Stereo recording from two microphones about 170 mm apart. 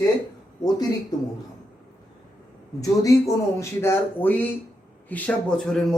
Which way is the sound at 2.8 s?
20° left (ahead or behind).